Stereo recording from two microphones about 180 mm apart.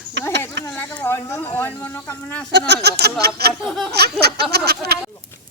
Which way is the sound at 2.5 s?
70° right (ahead or behind).